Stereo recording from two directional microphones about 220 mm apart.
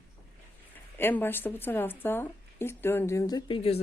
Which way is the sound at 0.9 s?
10° left (ahead or behind).